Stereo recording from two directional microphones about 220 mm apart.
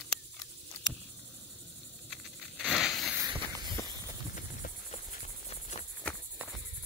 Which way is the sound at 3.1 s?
20° right (ahead or behind).